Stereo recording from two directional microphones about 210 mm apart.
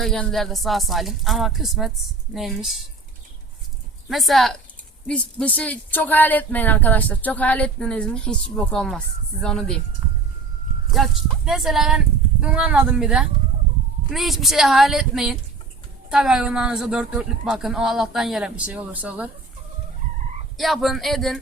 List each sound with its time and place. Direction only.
0.0 s a woman's voice: centre (ahead or behind)
4.1 s a woman's voice: centre (ahead or behind)
10.9 s a woman's voice: centre (ahead or behind)
20.6 s a woman's voice: centre (ahead or behind)